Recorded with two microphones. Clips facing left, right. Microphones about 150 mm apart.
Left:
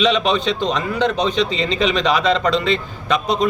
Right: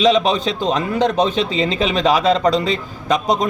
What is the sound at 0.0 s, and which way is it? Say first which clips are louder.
A man's voice: right 2 dB; 40° right (ahead or behind).